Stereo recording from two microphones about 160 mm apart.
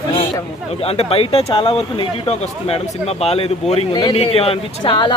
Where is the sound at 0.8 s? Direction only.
40° left (ahead or behind).